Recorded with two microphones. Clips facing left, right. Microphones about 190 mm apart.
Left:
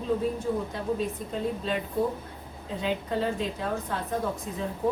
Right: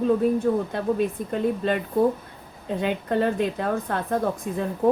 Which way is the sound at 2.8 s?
60° right (ahead or behind).